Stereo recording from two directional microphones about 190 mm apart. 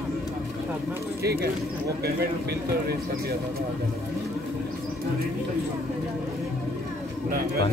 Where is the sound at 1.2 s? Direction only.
55° right (ahead or behind).